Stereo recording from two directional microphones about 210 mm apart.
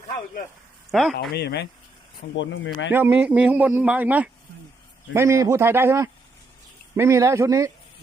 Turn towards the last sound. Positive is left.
turn(degrees=-15)  # may be behind; listen again after turning